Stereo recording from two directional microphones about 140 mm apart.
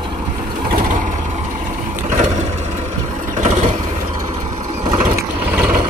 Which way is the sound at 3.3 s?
50° right (ahead or behind).